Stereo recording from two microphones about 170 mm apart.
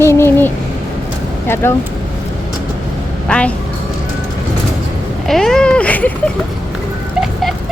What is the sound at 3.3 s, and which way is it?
Speech, 5° left (ahead or behind).